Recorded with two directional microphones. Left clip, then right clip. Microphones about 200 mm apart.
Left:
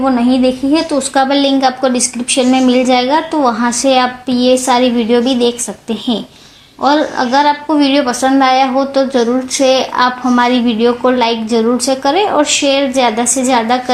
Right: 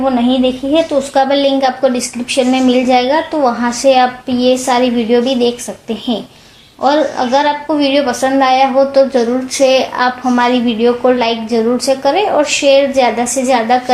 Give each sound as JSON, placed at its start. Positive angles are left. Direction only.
{"t": 0.0, "sound": "a woman's voice", "side_deg": 25}